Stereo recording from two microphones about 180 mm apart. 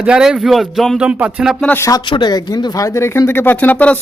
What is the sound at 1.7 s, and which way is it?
Speech, 20° left (ahead or behind).